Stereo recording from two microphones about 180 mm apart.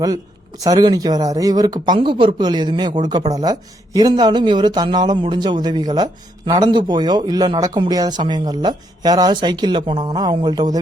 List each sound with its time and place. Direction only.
0.6 s speech: 20° right (ahead or behind)